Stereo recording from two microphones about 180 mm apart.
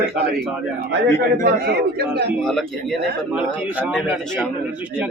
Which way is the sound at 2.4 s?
Centre (ahead or behind).